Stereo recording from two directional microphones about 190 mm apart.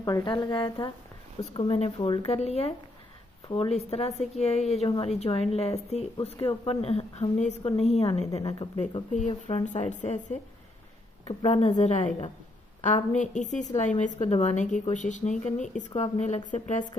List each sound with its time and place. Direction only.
0.0 s a woman's voice: 20° left (ahead or behind)
9.1 s a woman's voice: 40° left (ahead or behind)
11.4 s a woman's voice: 35° left (ahead or behind)